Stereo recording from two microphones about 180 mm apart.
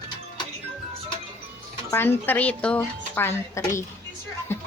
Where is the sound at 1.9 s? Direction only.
10° left (ahead or behind).